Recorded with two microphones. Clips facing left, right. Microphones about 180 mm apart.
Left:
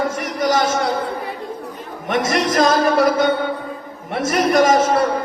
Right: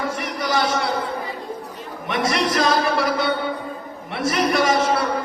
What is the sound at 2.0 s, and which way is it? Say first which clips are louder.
A man's voice: left 3 dB; 45° left (ahead or behind).